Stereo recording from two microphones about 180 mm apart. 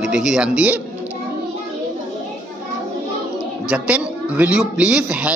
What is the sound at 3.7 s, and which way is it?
Speech, 5° right (ahead or behind).